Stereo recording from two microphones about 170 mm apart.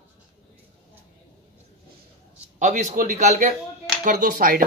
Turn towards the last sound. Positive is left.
turn(degrees=-55)  # may be behind; listen again after turning